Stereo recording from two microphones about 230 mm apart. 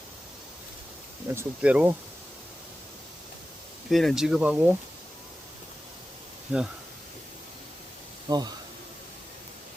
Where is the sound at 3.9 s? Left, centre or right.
Centre.